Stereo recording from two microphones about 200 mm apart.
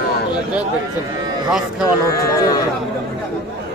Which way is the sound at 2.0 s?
15° left (ahead or behind).